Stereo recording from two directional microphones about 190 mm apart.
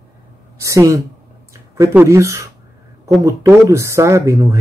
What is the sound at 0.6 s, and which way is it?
Speech, 15° right (ahead or behind).